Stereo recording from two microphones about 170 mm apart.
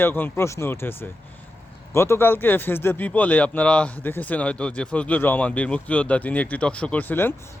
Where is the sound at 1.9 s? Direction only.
15° left (ahead or behind).